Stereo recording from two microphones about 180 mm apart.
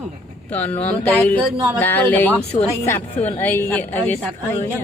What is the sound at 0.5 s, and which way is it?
Speech, 10° left (ahead or behind).